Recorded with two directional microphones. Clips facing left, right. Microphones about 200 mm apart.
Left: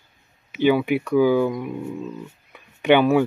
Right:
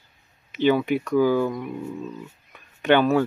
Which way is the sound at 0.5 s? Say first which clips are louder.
Left 2 dB; 10° left (ahead or behind).